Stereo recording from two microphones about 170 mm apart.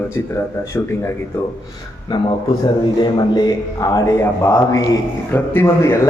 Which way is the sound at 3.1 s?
25° left (ahead or behind).